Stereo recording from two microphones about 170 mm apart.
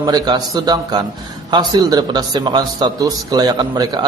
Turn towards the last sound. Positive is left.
turn(degrees=-20)  # may be behind; listen again after turning